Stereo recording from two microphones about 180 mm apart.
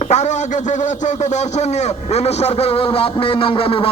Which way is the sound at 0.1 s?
40° left (ahead or behind).